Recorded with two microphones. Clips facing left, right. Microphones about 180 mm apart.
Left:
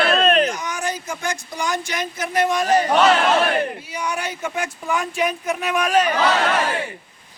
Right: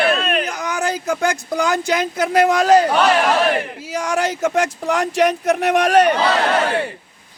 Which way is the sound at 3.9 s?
90° right.